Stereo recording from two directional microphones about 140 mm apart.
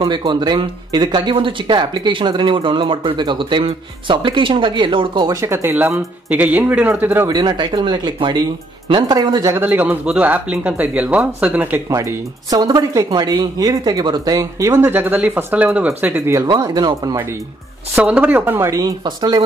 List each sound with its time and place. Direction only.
0.0 s speech: 35° right (ahead or behind); by 7.2 s 15° right (ahead or behind)
7.2 s speech: 30° right (ahead or behind); by 11.8 s 15° right (ahead or behind)
11.9 s speech: 25° right (ahead or behind)
17.9 s speech: 10° right (ahead or behind); by 19.4 s 30° right (ahead or behind)